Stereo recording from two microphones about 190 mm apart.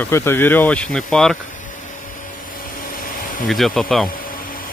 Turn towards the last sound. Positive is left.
turn(degrees=5)  # may be behind; listen again after turning